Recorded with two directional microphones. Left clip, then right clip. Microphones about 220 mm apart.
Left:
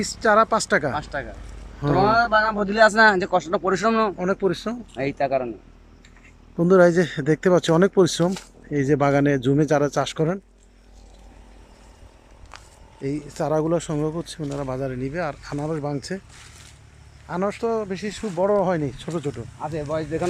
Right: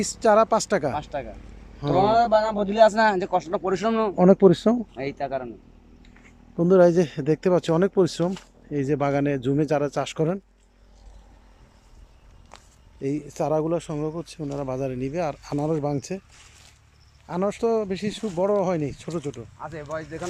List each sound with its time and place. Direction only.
0.0 s speech: 10° right (ahead or behind)
4.2 s speech: 25° right (ahead or behind)
4.9 s speech: 5° left (ahead or behind)
6.6 s speech: 10° right (ahead or behind)
12.5 s speech: 15° right (ahead or behind)
17.2 s speech: 10° right (ahead or behind)
19.5 s speech: 15° left (ahead or behind)